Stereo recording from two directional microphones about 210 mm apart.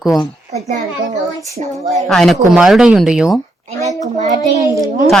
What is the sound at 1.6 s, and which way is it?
Speech, 35° right (ahead or behind).